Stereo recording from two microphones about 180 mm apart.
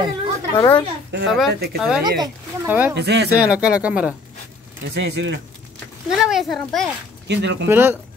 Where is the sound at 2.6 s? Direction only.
10° right (ahead or behind).